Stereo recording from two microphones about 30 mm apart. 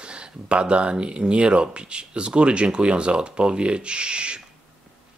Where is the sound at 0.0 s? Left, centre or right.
Right.